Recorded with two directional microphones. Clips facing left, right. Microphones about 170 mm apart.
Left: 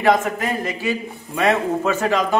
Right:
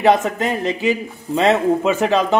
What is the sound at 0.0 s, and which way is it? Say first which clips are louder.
A man's voice: right 2 dB; 20° right (ahead or behind).